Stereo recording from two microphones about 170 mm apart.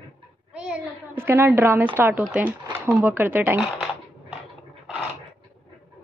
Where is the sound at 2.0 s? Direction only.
10° right (ahead or behind).